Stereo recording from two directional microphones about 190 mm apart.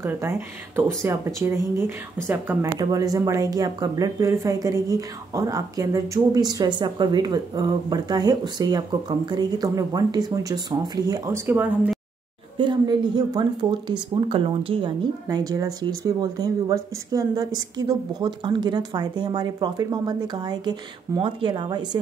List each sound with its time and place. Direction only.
0.0 s speech: 15° right (ahead or behind)
12.5 s speech: 25° right (ahead or behind)